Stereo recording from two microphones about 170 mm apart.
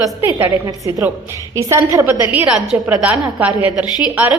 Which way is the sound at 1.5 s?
20° right (ahead or behind).